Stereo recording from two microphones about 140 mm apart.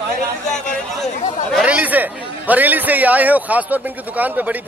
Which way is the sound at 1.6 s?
10° right (ahead or behind).